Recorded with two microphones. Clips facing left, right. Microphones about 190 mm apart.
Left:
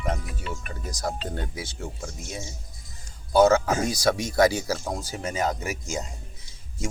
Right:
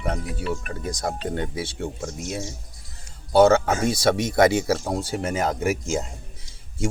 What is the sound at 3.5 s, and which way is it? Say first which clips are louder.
Speech: right 2 dB; 30° right (ahead or behind).